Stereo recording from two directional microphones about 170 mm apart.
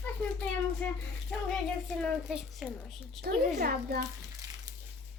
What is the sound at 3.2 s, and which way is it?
Speech, 65° right (ahead or behind).